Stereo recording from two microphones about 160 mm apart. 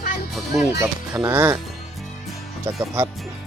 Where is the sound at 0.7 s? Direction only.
15° right (ahead or behind).